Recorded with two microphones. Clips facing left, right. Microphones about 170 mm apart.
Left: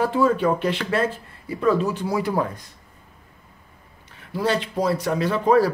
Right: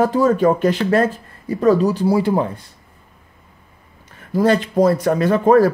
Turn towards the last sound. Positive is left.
turn(degrees=-50)  # may be behind; listen again after turning